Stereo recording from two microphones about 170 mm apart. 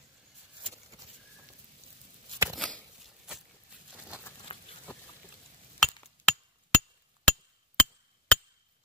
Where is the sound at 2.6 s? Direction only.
5° left (ahead or behind).